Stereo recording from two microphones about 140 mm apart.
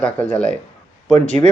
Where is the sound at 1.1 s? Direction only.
55° right (ahead or behind).